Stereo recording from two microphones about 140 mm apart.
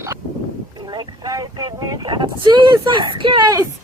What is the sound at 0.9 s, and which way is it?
Vehicle, 30° right (ahead or behind).